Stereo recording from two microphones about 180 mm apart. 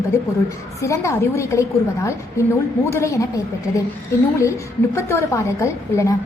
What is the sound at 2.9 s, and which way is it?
Speech, 15° left (ahead or behind).